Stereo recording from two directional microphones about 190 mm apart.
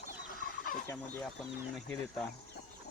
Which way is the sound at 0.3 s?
50° left (ahead or behind).